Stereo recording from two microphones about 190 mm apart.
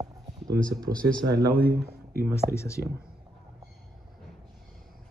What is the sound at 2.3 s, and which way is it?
Speech, 15° left (ahead or behind).